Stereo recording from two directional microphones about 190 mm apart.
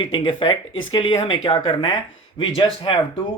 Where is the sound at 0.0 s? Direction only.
25° left (ahead or behind).